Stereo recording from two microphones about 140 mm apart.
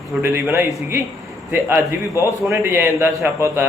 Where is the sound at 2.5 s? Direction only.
15° right (ahead or behind).